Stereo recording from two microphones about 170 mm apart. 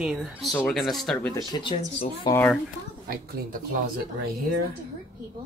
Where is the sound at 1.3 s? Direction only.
25° left (ahead or behind).